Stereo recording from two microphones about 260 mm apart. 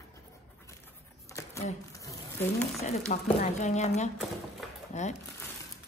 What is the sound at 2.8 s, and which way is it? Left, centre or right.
A woman's voice, left.